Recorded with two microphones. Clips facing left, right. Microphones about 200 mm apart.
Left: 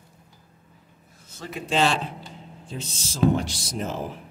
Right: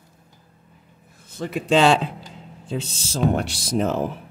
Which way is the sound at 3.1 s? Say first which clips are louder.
Even; 65° right (ahead or behind).